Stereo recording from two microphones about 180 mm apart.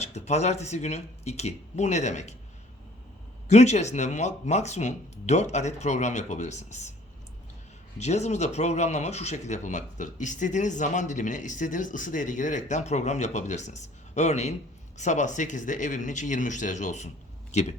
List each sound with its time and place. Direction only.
0.0 s speech: 40° left (ahead or behind)
3.5 s speech: 40° left (ahead or behind)
7.9 s speech: 40° left (ahead or behind)